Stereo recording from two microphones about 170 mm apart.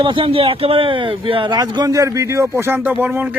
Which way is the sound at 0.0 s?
30° right (ahead or behind).